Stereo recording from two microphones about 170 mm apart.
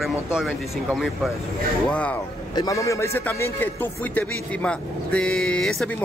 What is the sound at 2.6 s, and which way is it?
A man's voice, 20° left (ahead or behind).